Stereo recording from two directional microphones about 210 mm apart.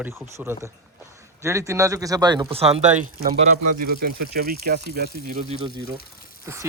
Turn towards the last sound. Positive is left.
turn(degrees=-15)  # may be behind; listen again after turning